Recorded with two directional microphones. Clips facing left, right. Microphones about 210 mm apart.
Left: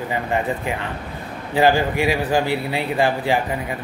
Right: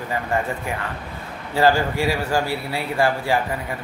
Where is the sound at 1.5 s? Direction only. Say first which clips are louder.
Left 1 dB; 15° left (ahead or behind).